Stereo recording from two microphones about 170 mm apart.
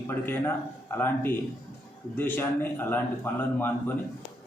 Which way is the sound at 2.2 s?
10° left (ahead or behind).